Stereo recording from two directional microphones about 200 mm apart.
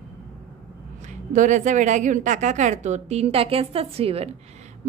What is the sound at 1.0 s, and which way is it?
A woman's voice, 40° right (ahead or behind).